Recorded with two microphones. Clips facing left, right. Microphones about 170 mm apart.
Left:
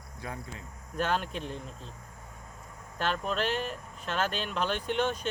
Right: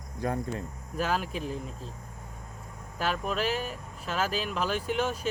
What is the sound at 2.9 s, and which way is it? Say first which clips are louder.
Speech: right 1 dB; 5° right (ahead or behind).